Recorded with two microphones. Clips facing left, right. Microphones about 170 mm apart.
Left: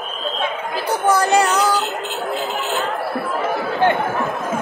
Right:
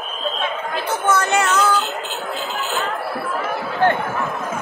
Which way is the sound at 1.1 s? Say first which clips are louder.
Left 3 dB; 35° left (ahead or behind).